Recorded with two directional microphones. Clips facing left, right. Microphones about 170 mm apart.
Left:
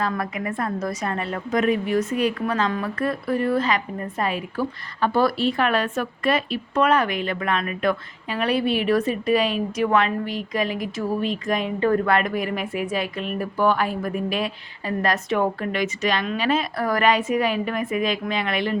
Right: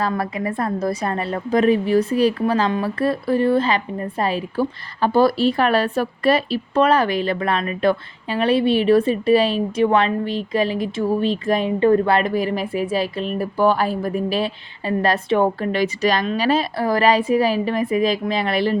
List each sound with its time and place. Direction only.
0.0 s a woman's voice: 30° right (ahead or behind)